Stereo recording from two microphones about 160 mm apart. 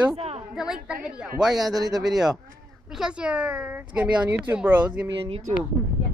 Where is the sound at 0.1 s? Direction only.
40° right (ahead or behind).